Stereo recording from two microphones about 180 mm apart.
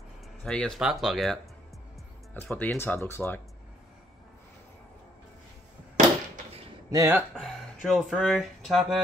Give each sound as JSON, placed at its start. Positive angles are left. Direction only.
{"t": 0.4, "sound": "speech", "side_deg": 5}
{"t": 6.9, "sound": "speech", "side_deg": -15}
{"t": 7.3, "sound": "speech", "side_deg": 0}